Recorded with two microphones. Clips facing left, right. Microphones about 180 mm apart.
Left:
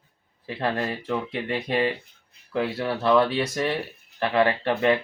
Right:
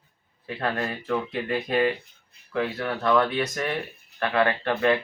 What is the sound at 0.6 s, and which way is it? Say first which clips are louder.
Speech: left 2 dB; 30° left (ahead or behind).